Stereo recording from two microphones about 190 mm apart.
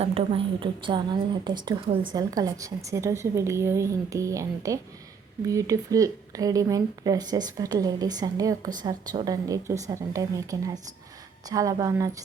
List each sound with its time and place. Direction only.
0.0 s a woman's voice: 30° right (ahead or behind)